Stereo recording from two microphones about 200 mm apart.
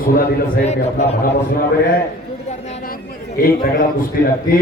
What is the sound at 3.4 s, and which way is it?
Speech, 50° left (ahead or behind).